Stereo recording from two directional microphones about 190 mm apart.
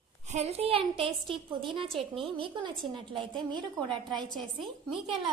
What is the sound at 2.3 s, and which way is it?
Speech, 25° right (ahead or behind).